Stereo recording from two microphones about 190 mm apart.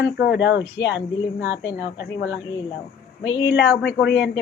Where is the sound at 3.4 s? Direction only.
65° left (ahead or behind).